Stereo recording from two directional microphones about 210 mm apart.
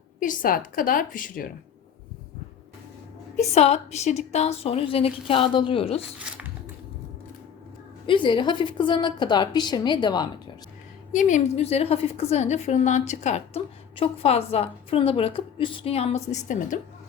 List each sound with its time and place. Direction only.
0.2 s a woman's voice: 40° left (ahead or behind)
3.3 s a woman's voice: 30° left (ahead or behind)
8.0 s a woman's voice: 25° left (ahead or behind)
11.1 s a woman's voice: 35° left (ahead or behind)